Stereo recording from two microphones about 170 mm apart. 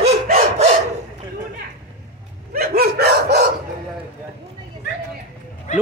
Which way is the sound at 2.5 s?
60° right (ahead or behind).